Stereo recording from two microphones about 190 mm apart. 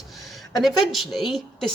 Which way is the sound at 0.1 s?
Centre (ahead or behind).